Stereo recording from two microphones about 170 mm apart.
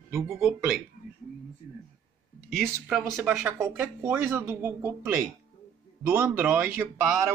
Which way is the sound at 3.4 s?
15° right (ahead or behind).